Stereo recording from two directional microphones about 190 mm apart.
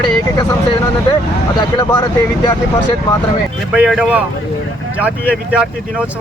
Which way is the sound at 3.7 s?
5° right (ahead or behind).